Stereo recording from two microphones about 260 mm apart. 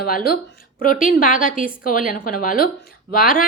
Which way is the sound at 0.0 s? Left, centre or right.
Left.